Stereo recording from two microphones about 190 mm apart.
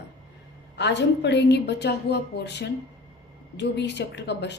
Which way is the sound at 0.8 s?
65° left (ahead or behind).